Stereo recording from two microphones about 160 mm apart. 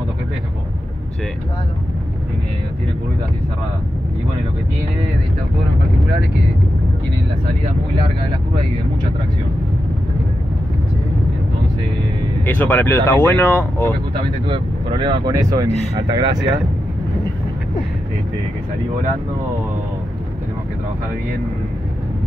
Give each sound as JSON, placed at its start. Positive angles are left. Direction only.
{"t": 12.4, "sound": "speech", "side_deg": 10}
{"t": 14.5, "sound": "speech", "side_deg": -30}